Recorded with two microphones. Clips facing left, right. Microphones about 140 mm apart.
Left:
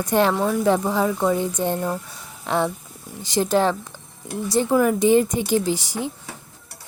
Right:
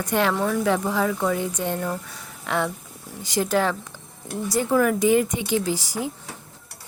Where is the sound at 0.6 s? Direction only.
25° left (ahead or behind).